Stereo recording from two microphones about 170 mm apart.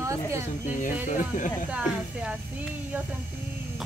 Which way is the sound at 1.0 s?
50° left (ahead or behind).